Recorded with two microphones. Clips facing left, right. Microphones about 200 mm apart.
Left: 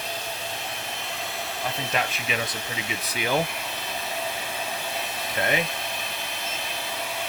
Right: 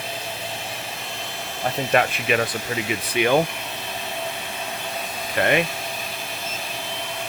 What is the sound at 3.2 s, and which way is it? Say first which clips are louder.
Speech: right 8 dB; 65° right (ahead or behind).